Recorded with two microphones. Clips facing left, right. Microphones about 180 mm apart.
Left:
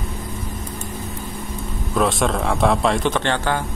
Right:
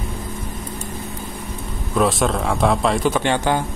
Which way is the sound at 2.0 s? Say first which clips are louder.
Right 1 dB; centre (ahead or behind).